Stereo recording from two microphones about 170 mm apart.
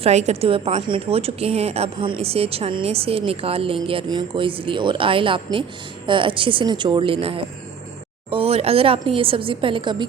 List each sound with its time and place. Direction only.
0.0 s a woman's voice: 40° right (ahead or behind)